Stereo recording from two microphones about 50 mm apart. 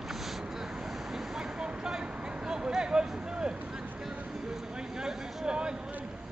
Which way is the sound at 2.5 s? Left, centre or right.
Centre.